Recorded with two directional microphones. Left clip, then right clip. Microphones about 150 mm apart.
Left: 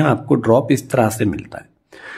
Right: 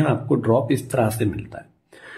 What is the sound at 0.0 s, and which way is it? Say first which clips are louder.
Speech: left 5 dB; 35° left (ahead or behind).